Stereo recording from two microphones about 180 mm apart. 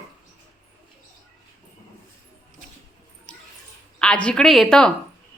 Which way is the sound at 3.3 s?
5° left (ahead or behind).